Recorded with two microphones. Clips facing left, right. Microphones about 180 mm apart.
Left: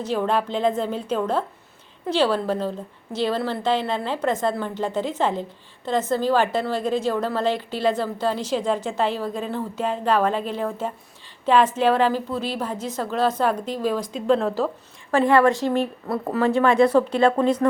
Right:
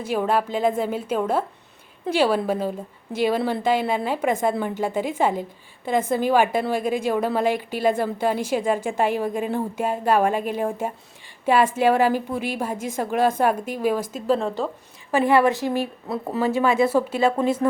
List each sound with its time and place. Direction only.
0.0 s a woman's voice: 10° right (ahead or behind)
15.1 s a woman's voice: 10° right (ahead or behind)